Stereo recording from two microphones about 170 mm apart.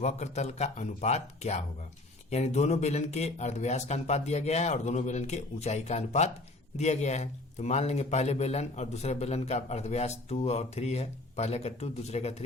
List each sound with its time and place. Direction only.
0.0 s a man's voice: 40° left (ahead or behind)